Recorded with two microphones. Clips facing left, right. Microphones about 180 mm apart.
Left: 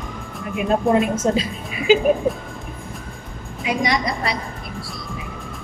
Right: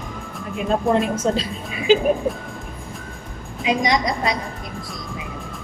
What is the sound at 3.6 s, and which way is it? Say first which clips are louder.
Speech: right 2 dB; 20° right (ahead or behind).